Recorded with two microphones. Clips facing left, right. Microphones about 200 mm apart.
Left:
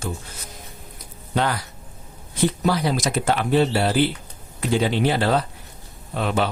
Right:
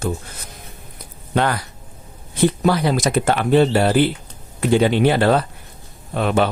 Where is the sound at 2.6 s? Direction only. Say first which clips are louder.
Right 4 dB; 60° right (ahead or behind).